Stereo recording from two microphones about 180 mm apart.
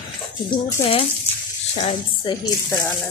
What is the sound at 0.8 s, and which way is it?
Speech, 30° left (ahead or behind).